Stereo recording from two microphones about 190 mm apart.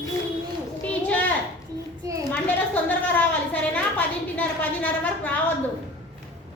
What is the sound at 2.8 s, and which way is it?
A woman's voice, 10° left (ahead or behind).